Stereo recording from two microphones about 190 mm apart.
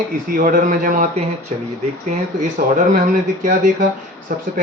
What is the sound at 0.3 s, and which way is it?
Speech, 45° right (ahead or behind).